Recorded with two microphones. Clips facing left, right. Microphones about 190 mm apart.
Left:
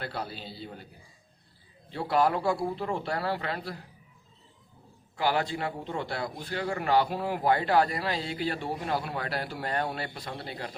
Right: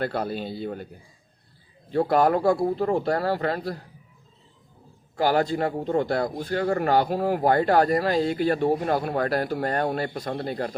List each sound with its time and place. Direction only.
0.0 s speech: 50° right (ahead or behind)
1.9 s speech: 45° right (ahead or behind)
5.1 s speech: 45° right (ahead or behind)